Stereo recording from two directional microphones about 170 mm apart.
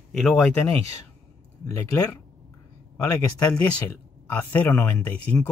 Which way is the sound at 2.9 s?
20° left (ahead or behind).